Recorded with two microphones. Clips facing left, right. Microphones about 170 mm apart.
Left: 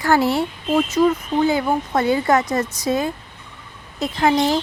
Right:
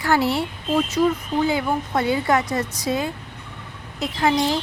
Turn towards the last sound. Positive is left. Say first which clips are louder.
# left 3 dB
turn(degrees=45)  # may be behind; listen again after turning